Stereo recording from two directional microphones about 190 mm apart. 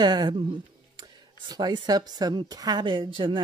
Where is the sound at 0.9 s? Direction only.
20° right (ahead or behind).